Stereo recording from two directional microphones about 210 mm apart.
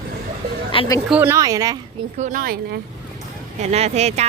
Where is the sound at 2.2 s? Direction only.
40° right (ahead or behind).